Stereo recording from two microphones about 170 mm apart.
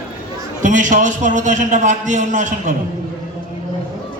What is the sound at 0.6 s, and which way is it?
A man's voice, 50° right (ahead or behind).